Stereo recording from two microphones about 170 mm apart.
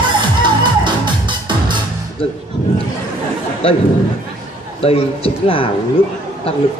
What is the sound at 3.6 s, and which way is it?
Speech, 30° left (ahead or behind).